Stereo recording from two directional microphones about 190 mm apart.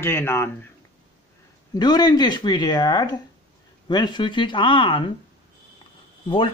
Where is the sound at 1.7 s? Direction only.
20° left (ahead or behind).